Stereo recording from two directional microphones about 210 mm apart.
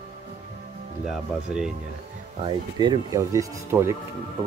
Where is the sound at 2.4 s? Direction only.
20° right (ahead or behind).